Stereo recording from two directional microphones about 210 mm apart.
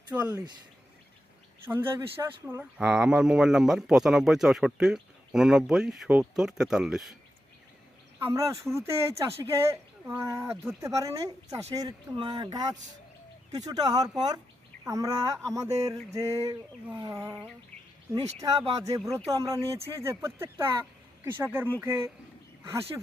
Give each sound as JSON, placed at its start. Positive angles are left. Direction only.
{"t": 0.1, "sound": "speech", "side_deg": -5}
{"t": 1.6, "sound": "speech", "side_deg": -10}
{"t": 8.2, "sound": "speech", "side_deg": -15}
{"t": 18.2, "sound": "speech", "side_deg": -30}
{"t": 18.9, "sound": "speech", "side_deg": -15}